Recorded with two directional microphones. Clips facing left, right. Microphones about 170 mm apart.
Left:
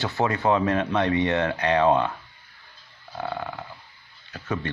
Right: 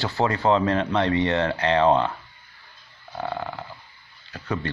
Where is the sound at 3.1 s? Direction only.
15° right (ahead or behind).